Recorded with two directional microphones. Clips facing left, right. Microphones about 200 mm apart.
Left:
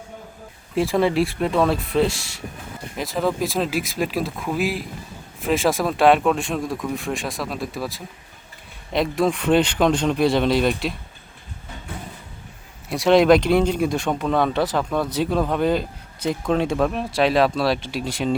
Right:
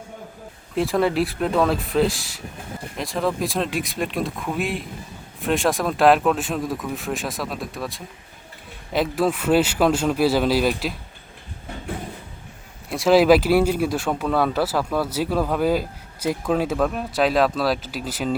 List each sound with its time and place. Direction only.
0.8 s speech: centre (ahead or behind)
12.9 s speech: centre (ahead or behind)